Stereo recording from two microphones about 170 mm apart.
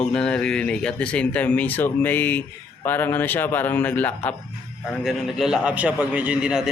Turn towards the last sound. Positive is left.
turn(degrees=-5)  # may be behind; listen again after turning